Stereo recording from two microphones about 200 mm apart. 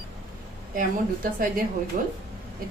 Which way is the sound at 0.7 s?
45° right (ahead or behind).